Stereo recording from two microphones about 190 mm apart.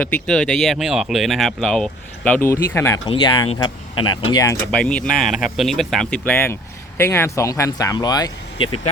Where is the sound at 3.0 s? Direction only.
25° left (ahead or behind).